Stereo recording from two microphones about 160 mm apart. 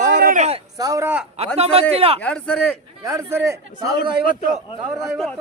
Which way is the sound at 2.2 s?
5° left (ahead or behind).